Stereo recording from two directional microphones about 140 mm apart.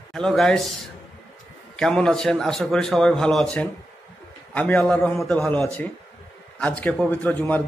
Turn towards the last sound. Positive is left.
turn(degrees=10)  # may be behind; listen again after turning